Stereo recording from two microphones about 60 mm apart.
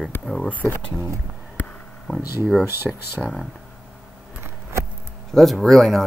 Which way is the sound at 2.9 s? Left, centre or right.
Centre.